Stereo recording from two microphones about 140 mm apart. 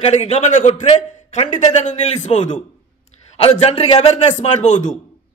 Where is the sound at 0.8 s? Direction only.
45° left (ahead or behind).